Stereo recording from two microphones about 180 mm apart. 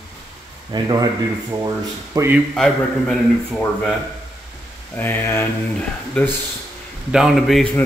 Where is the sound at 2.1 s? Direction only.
15° right (ahead or behind).